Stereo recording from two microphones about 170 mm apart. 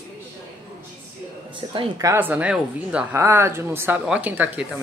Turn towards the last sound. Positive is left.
turn(degrees=-10)  # may be behind; listen again after turning